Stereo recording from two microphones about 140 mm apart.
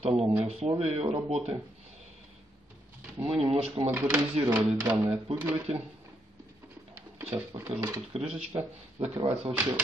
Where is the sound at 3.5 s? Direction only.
40° right (ahead or behind).